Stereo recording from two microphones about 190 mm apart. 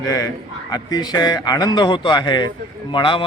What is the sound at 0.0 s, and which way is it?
A man's voice, 15° left (ahead or behind).